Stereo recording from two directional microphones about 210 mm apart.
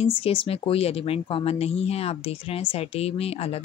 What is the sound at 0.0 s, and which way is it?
Speech, 25° left (ahead or behind).